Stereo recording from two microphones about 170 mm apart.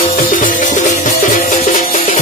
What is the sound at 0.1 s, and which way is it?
Music, 50° left (ahead or behind).